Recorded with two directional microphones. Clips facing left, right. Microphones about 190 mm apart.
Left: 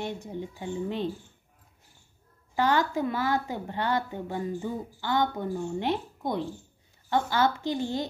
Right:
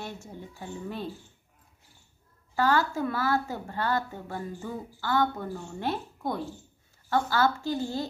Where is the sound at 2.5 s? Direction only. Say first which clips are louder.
Even; 20° left (ahead or behind).